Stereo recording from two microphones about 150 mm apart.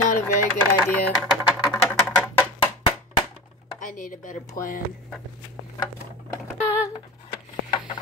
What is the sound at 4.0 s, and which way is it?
Speech, 70° left (ahead or behind).